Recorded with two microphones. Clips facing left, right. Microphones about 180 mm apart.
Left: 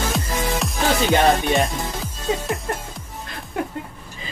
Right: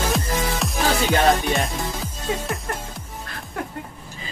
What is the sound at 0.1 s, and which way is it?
Music, centre (ahead or behind).